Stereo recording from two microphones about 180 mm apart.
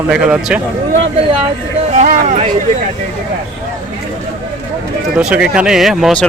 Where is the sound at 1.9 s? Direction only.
40° right (ahead or behind).